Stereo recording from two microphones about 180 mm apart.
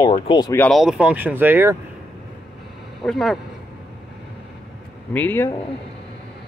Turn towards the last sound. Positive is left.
turn(degrees=10)  # may be behind; listen again after turning